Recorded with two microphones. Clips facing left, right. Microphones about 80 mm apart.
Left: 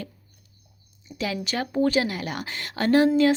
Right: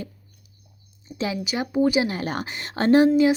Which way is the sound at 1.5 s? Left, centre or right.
Centre.